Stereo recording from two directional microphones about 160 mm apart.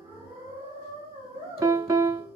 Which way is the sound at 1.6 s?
20° right (ahead or behind).